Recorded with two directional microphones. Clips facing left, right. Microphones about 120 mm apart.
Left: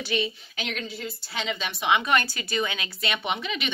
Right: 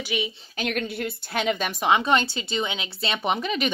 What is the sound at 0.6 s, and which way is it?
A woman's voice, 55° right (ahead or behind).